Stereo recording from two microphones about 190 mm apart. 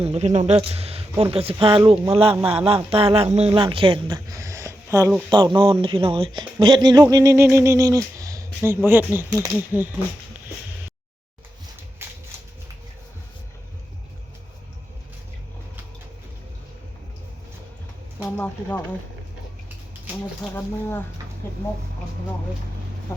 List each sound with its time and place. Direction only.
0.0 s speech: 35° right (ahead or behind); by 9.9 s 10° right (ahead or behind)
12.0 s a sound: 10° right (ahead or behind)
18.2 s speech: 5° left (ahead or behind)
20.4 s speech: 10° left (ahead or behind)